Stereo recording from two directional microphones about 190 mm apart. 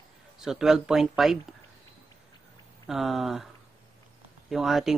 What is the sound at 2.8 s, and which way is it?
Speech, centre (ahead or behind).